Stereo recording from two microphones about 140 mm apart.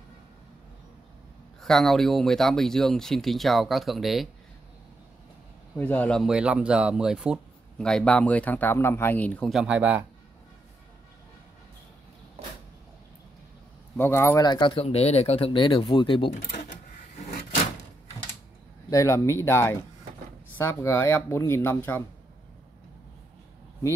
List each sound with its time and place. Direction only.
1.6 s speech: 5° left (ahead or behind)
5.8 s speech: 10° left (ahead or behind)
6.2 s speech: 5° right (ahead or behind)
7.8 s speech: 5° left (ahead or behind)
9.5 s speech: 5° right (ahead or behind)
13.9 s speech: 15° left (ahead or behind)
14.4 s speech: 35° left (ahead or behind)
16.3 s speech: 65° left (ahead or behind)
18.9 s speech: 25° left (ahead or behind)